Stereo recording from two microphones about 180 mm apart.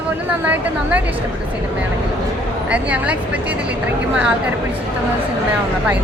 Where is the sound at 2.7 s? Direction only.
5° right (ahead or behind).